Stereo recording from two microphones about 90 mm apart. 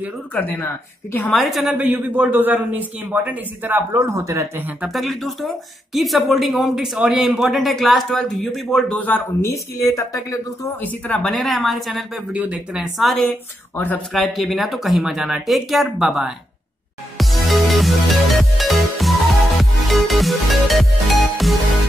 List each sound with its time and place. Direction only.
0.3 s a man's voice: 20° left (ahead or behind)
1.3 s speech: centre (ahead or behind)
1.8 s a man's voice: 20° right (ahead or behind)
4.0 s speech: 35° right (ahead or behind)
4.8 s speech: centre (ahead or behind)
8.9 s a man's voice: 20° left (ahead or behind)
9.5 s speech: 35° left (ahead or behind)
10.8 s speech: 20° left (ahead or behind)
11.2 s speech: centre (ahead or behind)
12.3 s speech: 15° right (ahead or behind)
12.9 s speech: centre (ahead or behind)
13.7 s a man's voice: 20° left (ahead or behind)
14.1 s speech: centre (ahead or behind)
17.2 s music: centre (ahead or behind)